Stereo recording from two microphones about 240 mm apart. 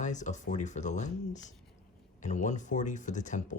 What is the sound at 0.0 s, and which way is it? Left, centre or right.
Speech, left.